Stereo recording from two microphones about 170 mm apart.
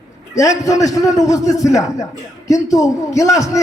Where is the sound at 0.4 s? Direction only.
20° left (ahead or behind).